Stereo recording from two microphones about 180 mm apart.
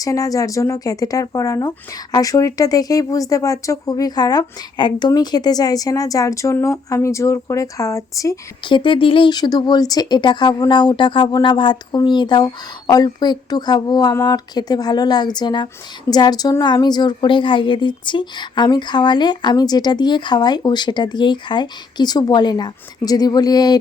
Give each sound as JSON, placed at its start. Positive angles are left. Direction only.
{"t": 0.0, "sound": "speech", "side_deg": 20}